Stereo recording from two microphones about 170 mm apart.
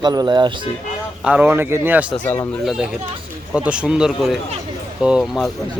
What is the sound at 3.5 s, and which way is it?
Speech, 5° right (ahead or behind).